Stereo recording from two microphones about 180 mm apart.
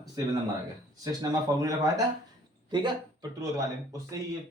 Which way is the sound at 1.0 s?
20° right (ahead or behind).